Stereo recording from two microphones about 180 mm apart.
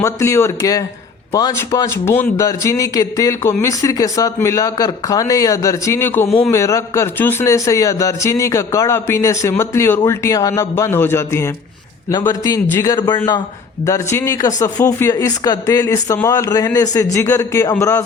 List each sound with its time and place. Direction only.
0.0 s a man's voice: 15° left (ahead or behind)